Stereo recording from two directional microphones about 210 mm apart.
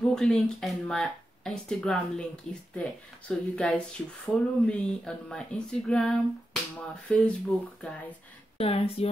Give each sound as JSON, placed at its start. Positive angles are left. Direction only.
{"t": 0.0, "sound": "speech", "side_deg": 5}
{"t": 8.5, "sound": "speech", "side_deg": 30}